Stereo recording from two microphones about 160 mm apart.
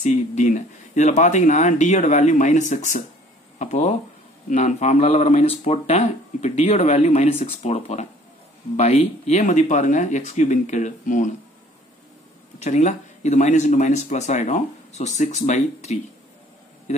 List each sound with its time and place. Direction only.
0.0 s speech: 45° left (ahead or behind)
12.6 s speech: 45° left (ahead or behind)